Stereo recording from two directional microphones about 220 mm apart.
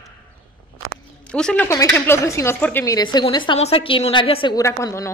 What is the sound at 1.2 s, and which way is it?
A woman's voice, 5° left (ahead or behind).